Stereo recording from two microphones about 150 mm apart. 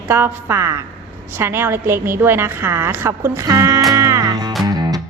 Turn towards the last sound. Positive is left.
turn(degrees=-25)  # may be behind; listen again after turning